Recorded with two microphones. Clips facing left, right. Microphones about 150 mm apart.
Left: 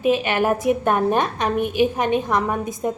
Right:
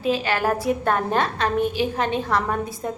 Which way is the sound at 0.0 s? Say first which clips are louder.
Left 3 dB; 20° left (ahead or behind).